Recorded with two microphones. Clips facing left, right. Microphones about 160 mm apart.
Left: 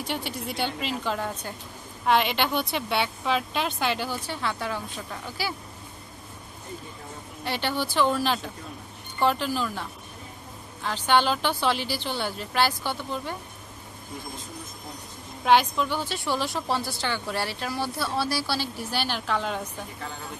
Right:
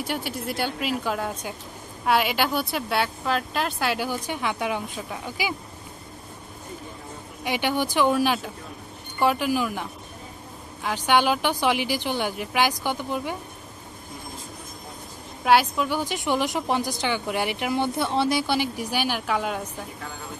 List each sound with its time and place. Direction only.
0.0 s a woman's voice: 5° right (ahead or behind)
7.4 s a woman's voice: 15° right (ahead or behind)
15.4 s a woman's voice: 5° right (ahead or behind)